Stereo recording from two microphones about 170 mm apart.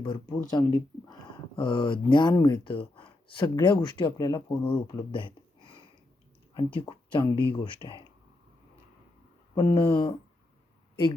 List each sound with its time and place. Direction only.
0.0 s speech: 25° left (ahead or behind)
9.6 s speech: 25° left (ahead or behind)